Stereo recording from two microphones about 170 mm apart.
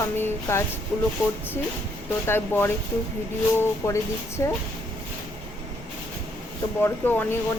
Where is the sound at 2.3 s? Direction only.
15° left (ahead or behind).